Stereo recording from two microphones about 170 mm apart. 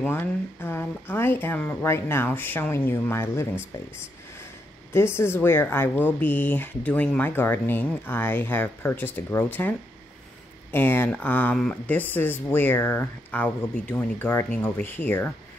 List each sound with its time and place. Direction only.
0.0 s speech: 10° left (ahead or behind)
4.9 s speech: 15° left (ahead or behind)